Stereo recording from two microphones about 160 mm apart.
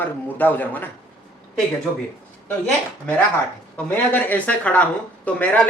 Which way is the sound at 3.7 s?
10° left (ahead or behind).